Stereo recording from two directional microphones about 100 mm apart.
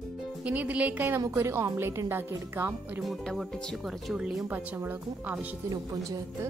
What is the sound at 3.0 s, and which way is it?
Speech, centre (ahead or behind).